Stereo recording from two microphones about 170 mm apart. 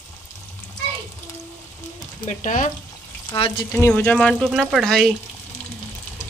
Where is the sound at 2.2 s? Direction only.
50° left (ahead or behind).